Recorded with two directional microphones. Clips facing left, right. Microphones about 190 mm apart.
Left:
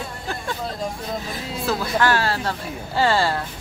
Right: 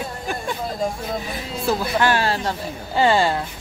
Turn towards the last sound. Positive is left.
turn(degrees=-20)  # may be behind; listen again after turning